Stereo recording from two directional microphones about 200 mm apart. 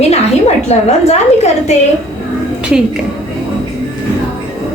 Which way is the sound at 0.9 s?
35° left (ahead or behind).